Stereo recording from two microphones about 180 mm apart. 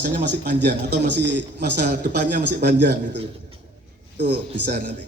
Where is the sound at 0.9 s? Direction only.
75° right (ahead or behind).